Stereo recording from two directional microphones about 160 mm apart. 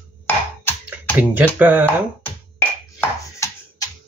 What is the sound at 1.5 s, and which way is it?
Speech, 10° right (ahead or behind).